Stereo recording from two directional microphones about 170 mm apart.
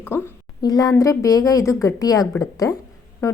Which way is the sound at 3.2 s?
15° left (ahead or behind).